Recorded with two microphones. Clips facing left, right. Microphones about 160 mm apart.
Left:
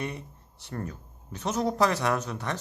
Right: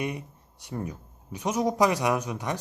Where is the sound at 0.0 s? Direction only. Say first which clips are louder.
Right 3 dB; 15° right (ahead or behind).